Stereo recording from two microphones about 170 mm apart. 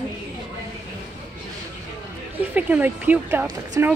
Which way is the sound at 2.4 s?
10° right (ahead or behind).